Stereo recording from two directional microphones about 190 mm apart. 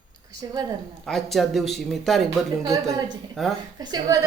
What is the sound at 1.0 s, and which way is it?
A man's voice, centre (ahead or behind).